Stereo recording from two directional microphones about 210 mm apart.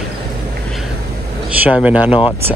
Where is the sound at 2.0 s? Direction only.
25° left (ahead or behind).